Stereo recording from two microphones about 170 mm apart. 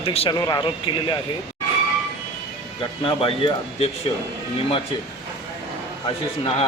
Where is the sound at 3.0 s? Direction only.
30° left (ahead or behind).